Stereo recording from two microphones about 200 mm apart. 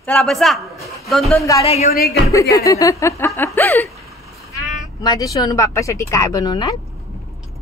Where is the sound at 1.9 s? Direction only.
50° left (ahead or behind).